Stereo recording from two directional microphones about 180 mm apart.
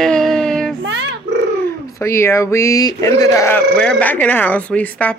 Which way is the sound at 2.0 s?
15° left (ahead or behind).